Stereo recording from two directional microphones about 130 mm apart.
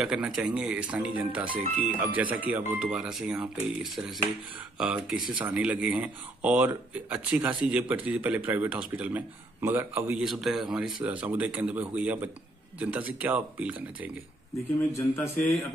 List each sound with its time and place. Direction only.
0.0 s speech: 5° right (ahead or behind)
10.2 s speech: centre (ahead or behind)
15.0 s speech: 15° left (ahead or behind)